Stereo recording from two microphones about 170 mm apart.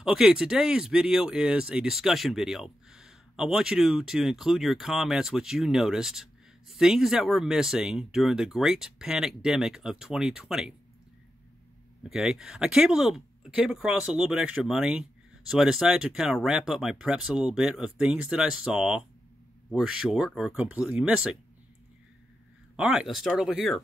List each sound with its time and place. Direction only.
0.0 s speech: 5° right (ahead or behind)
12.0 s speech: centre (ahead or behind)
22.8 s speech: centre (ahead or behind)